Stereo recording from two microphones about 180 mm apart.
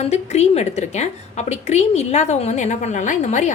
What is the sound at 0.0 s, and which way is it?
A woman's voice, 35° left (ahead or behind).